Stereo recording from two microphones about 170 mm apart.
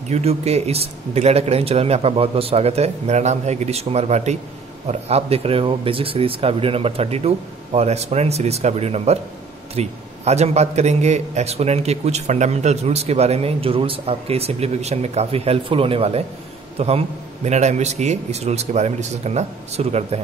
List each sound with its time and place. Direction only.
0.1 s a man's voice: 40° right (ahead or behind)